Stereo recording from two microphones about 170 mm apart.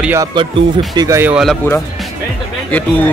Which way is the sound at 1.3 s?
Centre (ahead or behind).